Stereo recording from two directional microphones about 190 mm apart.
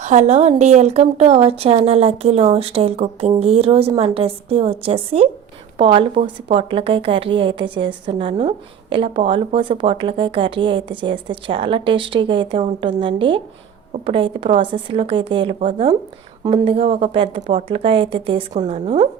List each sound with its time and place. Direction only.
0.0 s a woman's voice: 35° right (ahead or behind)